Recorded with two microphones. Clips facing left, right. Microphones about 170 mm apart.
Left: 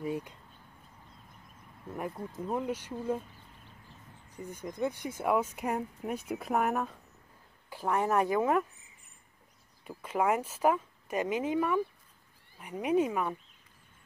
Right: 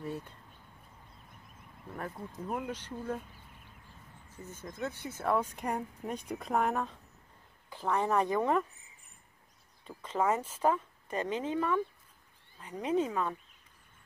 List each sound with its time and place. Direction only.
0.0 s speech: 10° left (ahead or behind)
1.9 s speech: 10° left (ahead or behind)
2.7 s speech: 10° left (ahead or behind)
4.3 s a woman's voice: 15° left (ahead or behind)
9.8 s speech: 10° left (ahead or behind)